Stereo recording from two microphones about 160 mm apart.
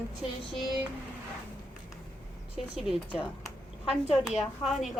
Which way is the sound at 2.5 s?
5° right (ahead or behind).